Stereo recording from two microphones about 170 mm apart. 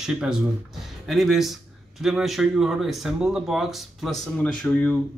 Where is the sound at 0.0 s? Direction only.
5° right (ahead or behind).